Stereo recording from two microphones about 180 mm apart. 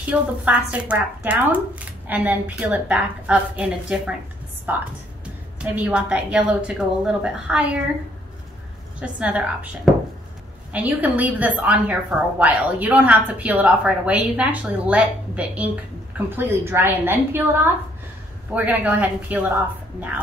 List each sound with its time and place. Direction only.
0.1 s a woman's voice: 10° right (ahead or behind)
5.2 s a woman's voice: 5° right (ahead or behind)
9.0 s a woman's voice: 5° right (ahead or behind)
10.7 s a woman's voice: 10° right (ahead or behind)
18.5 s a woman's voice: 10° right (ahead or behind)